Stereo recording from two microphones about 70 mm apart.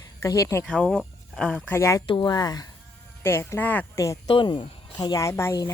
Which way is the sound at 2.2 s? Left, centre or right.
Left.